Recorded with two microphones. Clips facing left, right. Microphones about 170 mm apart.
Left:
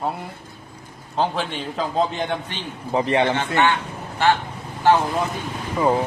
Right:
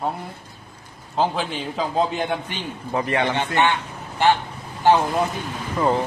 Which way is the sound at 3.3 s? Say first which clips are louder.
Even; 15° right (ahead or behind).